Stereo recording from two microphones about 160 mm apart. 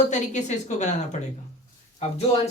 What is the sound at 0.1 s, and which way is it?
A woman's voice, 45° left (ahead or behind).